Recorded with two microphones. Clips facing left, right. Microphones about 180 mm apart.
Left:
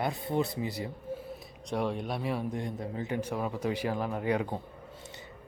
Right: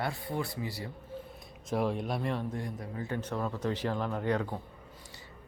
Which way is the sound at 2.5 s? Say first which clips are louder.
Left 3 dB; 20° left (ahead or behind).